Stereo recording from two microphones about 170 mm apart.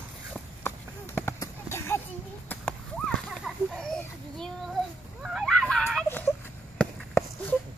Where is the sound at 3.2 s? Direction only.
Centre (ahead or behind).